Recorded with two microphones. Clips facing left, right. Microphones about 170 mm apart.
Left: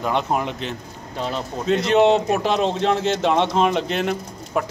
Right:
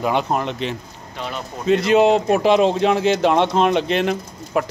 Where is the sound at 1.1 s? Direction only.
30° left (ahead or behind).